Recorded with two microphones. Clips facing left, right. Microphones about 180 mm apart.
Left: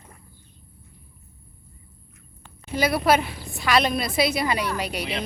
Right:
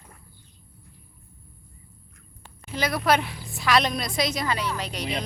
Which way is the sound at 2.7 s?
10° left (ahead or behind).